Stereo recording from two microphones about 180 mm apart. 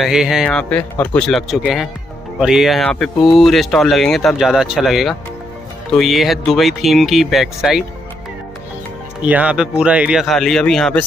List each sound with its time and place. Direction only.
0.0 s speech: 5° right (ahead or behind)
9.2 s speech: 10° right (ahead or behind)